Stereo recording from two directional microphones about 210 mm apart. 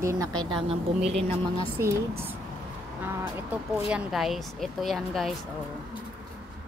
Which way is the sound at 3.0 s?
10° right (ahead or behind).